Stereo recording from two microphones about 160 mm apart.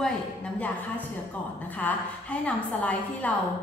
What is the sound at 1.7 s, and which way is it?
A woman's voice, 10° left (ahead or behind).